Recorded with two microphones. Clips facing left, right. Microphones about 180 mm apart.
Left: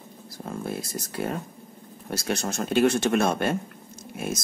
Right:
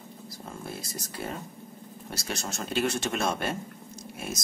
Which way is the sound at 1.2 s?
60° left (ahead or behind).